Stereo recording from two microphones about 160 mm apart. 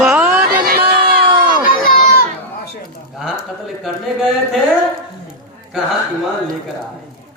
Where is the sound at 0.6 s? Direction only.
75° right (ahead or behind).